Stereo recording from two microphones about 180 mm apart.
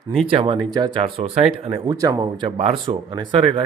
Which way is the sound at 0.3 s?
30° right (ahead or behind).